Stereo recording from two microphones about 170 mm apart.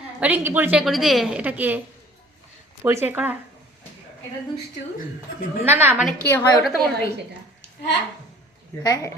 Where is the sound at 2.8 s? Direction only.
15° right (ahead or behind).